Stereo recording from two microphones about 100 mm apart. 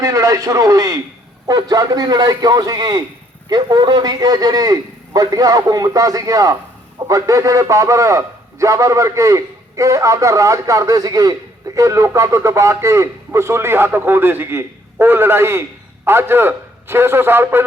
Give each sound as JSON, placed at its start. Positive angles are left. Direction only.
{"t": 0.0, "sound": "a man's voice", "side_deg": -35}